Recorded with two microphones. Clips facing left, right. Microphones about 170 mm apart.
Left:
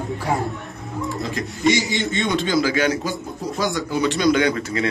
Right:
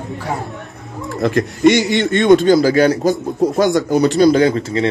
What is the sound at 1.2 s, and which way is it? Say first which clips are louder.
A man's voice: right 9 dB; 65° right (ahead or behind).